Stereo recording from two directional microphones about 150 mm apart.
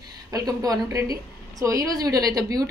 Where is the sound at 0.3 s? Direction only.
25° right (ahead or behind).